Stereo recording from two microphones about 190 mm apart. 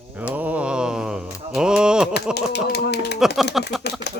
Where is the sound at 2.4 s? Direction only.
60° left (ahead or behind).